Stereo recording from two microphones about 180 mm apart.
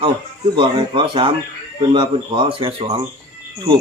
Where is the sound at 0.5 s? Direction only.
25° right (ahead or behind).